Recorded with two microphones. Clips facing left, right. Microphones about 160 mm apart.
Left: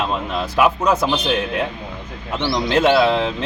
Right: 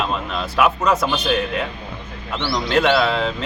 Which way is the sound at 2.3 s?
15° left (ahead or behind).